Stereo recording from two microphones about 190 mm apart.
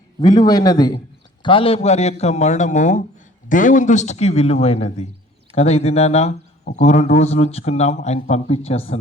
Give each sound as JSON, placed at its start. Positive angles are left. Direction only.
{"t": 0.2, "sound": "a man's voice", "side_deg": 20}